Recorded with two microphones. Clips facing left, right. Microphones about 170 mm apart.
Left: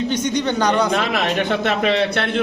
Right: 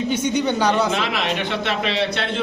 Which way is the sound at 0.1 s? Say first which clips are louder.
Even; 10° right (ahead or behind).